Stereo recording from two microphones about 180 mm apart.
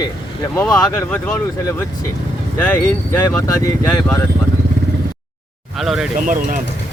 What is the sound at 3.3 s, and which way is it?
Speech, 15° left (ahead or behind).